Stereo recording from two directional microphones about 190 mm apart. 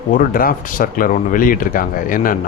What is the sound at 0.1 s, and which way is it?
Speech, 50° left (ahead or behind).